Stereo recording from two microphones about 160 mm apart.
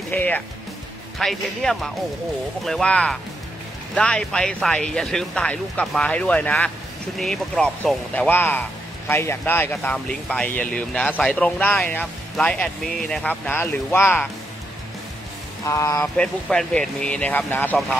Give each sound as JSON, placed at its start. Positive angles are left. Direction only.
{"t": 0.1, "sound": "speech", "side_deg": 10}
{"t": 15.6, "sound": "speech", "side_deg": 20}
{"t": 16.2, "sound": "speech", "side_deg": 5}